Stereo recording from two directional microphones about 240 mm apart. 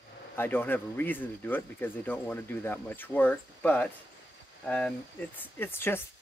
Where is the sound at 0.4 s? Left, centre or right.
Centre.